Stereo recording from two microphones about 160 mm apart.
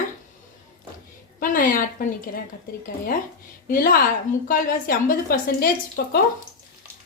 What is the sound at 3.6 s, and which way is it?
A woman's voice, 65° left (ahead or behind).